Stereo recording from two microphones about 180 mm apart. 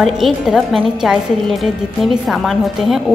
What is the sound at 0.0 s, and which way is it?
A woman's voice, centre (ahead or behind).